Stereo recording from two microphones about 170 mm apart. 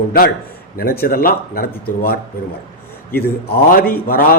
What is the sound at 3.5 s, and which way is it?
Speech, 60° left (ahead or behind).